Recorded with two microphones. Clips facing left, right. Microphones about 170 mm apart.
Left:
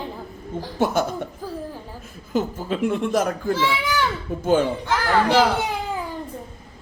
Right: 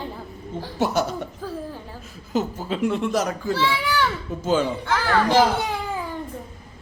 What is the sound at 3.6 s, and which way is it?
Speech, 15° left (ahead or behind).